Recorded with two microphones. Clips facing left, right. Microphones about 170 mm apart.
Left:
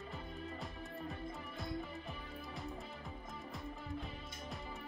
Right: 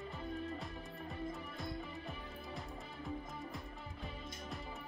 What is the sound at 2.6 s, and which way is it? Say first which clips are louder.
Music: left 1 dB; centre (ahead or behind).